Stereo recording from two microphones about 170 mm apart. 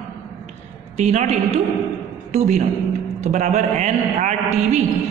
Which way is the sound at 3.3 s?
45° right (ahead or behind).